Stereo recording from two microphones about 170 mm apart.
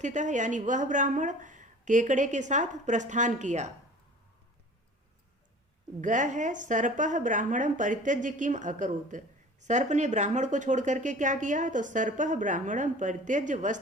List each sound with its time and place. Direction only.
0.0 s a woman's voice: 45° right (ahead or behind)
6.0 s a woman's voice: 45° right (ahead or behind)